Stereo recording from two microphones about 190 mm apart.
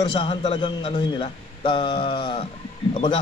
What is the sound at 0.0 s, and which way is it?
A man's voice, 25° left (ahead or behind).